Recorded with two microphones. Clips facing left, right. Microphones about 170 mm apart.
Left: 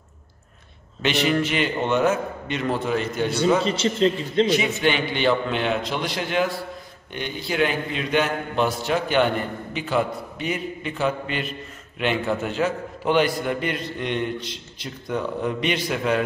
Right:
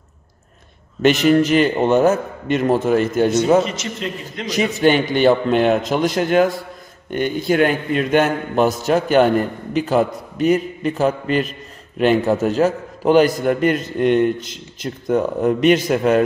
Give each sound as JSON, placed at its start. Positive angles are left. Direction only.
{"t": 1.0, "sound": "a man's voice", "side_deg": -45}
{"t": 3.6, "sound": "a man's voice", "side_deg": 30}
{"t": 4.5, "sound": "a man's voice", "side_deg": -40}